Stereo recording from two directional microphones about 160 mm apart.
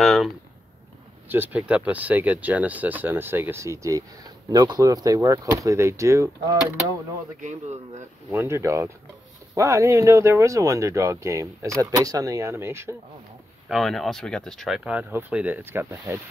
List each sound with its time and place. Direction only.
0.0 s a sound: centre (ahead or behind)
1.3 s speech: 10° right (ahead or behind)
7.4 s speech: 45° right (ahead or behind)
8.3 s speech: 15° right (ahead or behind)
13.7 s speech: centre (ahead or behind)